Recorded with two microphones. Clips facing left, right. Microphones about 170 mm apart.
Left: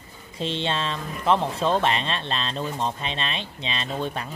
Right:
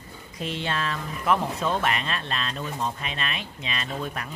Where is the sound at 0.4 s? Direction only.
25° left (ahead or behind).